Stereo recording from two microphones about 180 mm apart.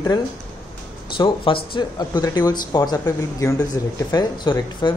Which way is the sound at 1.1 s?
30° left (ahead or behind).